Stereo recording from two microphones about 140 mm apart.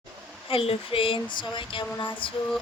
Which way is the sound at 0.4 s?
40° left (ahead or behind).